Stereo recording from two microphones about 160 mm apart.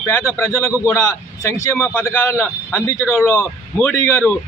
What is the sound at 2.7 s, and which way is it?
A man's voice, 15° left (ahead or behind).